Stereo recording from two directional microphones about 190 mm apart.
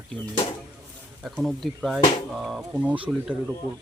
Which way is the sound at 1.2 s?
Centre (ahead or behind).